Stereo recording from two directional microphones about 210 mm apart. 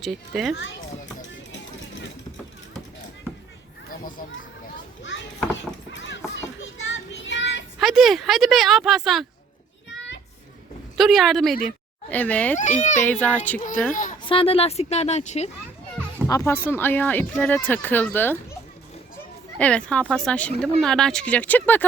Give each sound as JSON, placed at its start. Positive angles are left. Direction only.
{"t": 0.0, "sound": "a woman's voice", "side_deg": 0}
{"t": 1.5, "sound": "music", "side_deg": 60}
{"t": 3.8, "sound": "a child's voice", "side_deg": 40}
{"t": 5.9, "sound": "a sound", "side_deg": 60}
{"t": 7.8, "sound": "a woman's voice", "side_deg": 0}
{"t": 10.9, "sound": "speech", "side_deg": 0}
{"t": 12.8, "sound": "speech", "side_deg": 35}
{"t": 13.1, "sound": "speech", "side_deg": 5}
{"t": 13.9, "sound": "speech", "side_deg": 40}
{"t": 14.3, "sound": "speech", "side_deg": 25}
{"t": 16.2, "sound": "speech", "side_deg": 15}
{"t": 19.5, "sound": "a woman's voice", "side_deg": 5}